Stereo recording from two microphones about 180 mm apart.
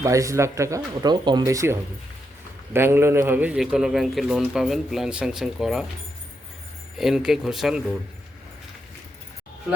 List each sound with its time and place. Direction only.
0.0 s speech: 15° right (ahead or behind); by 5.8 s centre (ahead or behind)
7.0 s speech: centre (ahead or behind)